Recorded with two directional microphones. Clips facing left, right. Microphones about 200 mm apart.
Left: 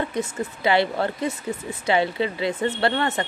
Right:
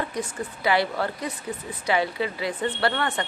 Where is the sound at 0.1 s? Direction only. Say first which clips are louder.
Left 4 dB; 25° left (ahead or behind).